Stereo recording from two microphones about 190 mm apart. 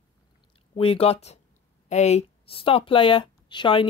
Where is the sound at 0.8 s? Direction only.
30° left (ahead or behind).